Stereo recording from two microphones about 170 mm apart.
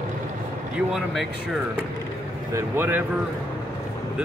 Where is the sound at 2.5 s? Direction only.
15° right (ahead or behind).